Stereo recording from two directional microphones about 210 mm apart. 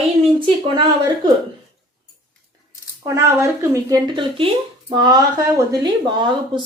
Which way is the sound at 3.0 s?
15° right (ahead or behind).